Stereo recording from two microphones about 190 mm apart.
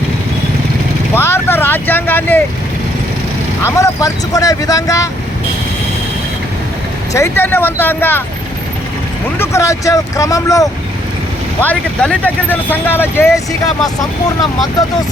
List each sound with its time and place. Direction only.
1.1 s vehicle: 10° left (ahead or behind)
3.6 s speech: 15° left (ahead or behind)
7.1 s speech: 15° left (ahead or behind)
9.4 s speech: 15° left (ahead or behind)